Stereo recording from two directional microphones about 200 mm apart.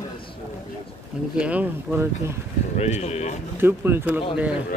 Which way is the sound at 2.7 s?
35° left (ahead or behind).